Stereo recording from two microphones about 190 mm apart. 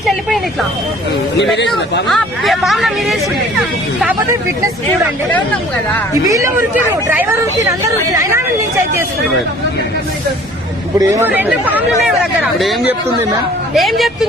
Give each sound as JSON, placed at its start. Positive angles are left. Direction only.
{"t": 1.4, "sound": "speech", "side_deg": 65}
{"t": 2.0, "sound": "speech", "side_deg": 0}
{"t": 6.2, "sound": "speech", "side_deg": -15}
{"t": 11.0, "sound": "speech", "side_deg": -10}